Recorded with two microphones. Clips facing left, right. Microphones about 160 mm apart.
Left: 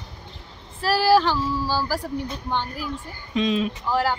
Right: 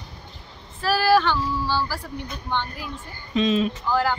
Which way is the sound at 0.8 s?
30° left (ahead or behind).